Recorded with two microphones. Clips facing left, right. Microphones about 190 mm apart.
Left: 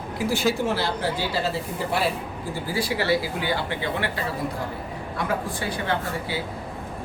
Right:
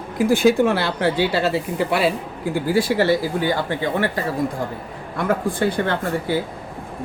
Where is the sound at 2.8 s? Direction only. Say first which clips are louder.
Right 5 dB; 50° right (ahead or behind).